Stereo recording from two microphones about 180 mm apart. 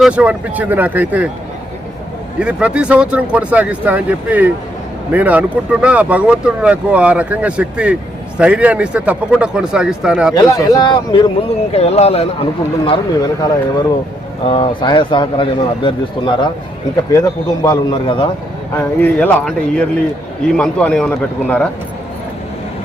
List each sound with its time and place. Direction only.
0.0 s speech: 5° right (ahead or behind)
2.4 s speech: 5° right (ahead or behind)
10.3 s a man's voice: 20° left (ahead or behind)
18.8 s speech: 10° left (ahead or behind)